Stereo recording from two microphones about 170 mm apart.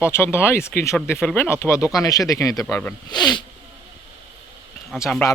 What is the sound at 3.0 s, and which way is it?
Speech, 25° left (ahead or behind).